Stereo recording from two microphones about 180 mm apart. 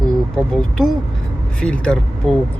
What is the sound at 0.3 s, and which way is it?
Speech, 5° left (ahead or behind).